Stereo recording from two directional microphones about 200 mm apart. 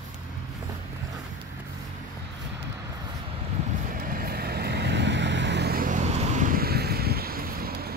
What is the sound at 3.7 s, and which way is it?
Vehicle, 45° right (ahead or behind).